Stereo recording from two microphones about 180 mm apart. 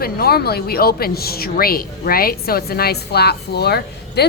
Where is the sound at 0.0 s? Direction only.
60° left (ahead or behind).